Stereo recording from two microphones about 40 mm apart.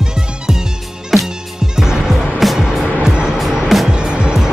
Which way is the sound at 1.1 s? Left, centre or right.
Centre.